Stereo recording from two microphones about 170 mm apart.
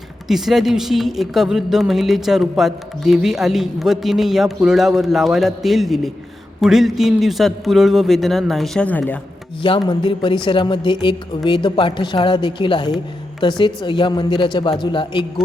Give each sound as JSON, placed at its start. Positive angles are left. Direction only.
{"t": 0.3, "sound": "a woman's voice", "side_deg": 0}
{"t": 9.6, "sound": "a man's voice", "side_deg": 30}